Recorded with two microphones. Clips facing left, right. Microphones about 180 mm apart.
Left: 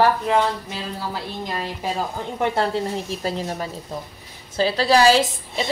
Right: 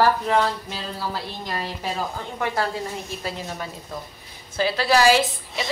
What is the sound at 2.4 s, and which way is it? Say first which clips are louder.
Speech: left 4 dB; 25° left (ahead or behind).